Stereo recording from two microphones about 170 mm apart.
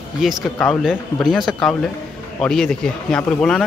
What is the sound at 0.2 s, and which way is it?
Speech, centre (ahead or behind).